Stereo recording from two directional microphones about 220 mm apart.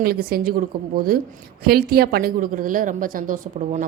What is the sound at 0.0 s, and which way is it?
A woman's voice, 45° right (ahead or behind).